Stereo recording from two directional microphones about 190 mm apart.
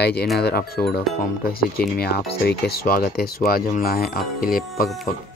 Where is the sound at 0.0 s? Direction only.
60° left (ahead or behind).